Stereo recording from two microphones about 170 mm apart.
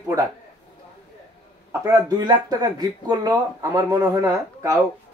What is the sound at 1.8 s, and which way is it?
Speech, 20° right (ahead or behind).